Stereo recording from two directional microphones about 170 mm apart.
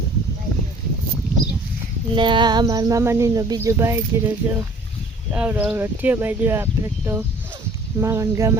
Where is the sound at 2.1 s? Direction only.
30° right (ahead or behind).